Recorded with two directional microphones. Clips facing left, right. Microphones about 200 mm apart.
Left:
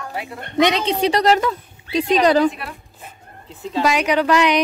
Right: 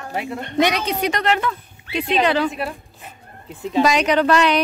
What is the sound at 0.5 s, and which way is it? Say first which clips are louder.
Speech: left 2 dB; 20° left (ahead or behind).